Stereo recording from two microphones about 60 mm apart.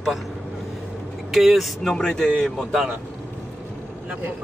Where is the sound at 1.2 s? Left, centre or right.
Centre.